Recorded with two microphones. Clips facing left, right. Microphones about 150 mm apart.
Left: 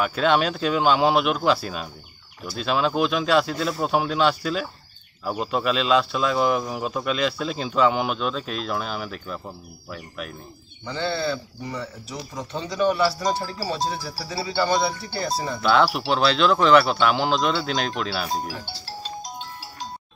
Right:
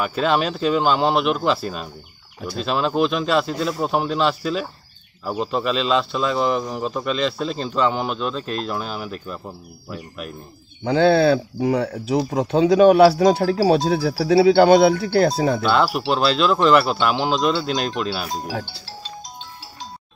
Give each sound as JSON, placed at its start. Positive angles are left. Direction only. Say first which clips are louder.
{"t": 0.0, "sound": "speech", "louder": "right 1 dB", "side_deg": 0}
{"t": 10.8, "sound": "speech", "louder": "right 11 dB", "side_deg": -65}
{"t": 15.6, "sound": "speech", "louder": "right 1 dB", "side_deg": 0}